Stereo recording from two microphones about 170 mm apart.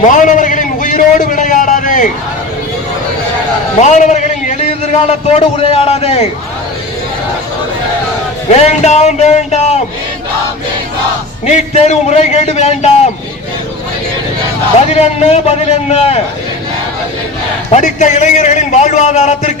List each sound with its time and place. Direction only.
0.1 s a sound: 50° left (ahead or behind)
3.8 s a man's voice: 45° left (ahead or behind)
8.5 s a man's voice: 40° left (ahead or behind)
11.4 s a man's voice: 40° left (ahead or behind)
14.8 s a man's voice: 40° left (ahead or behind)
17.7 s a man's voice: 45° left (ahead or behind)